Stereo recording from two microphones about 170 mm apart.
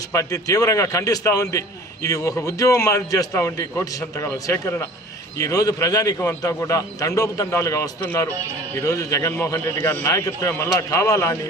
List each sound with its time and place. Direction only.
0.1 s a man's voice: 20° left (ahead or behind)